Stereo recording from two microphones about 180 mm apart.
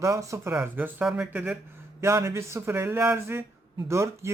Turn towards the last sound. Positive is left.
turn(degrees=-15)  # may be behind; listen again after turning